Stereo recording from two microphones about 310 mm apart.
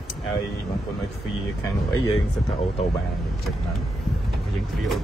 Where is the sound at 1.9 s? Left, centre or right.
Centre.